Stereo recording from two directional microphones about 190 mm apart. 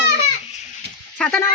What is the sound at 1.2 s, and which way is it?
Speech, 5° left (ahead or behind).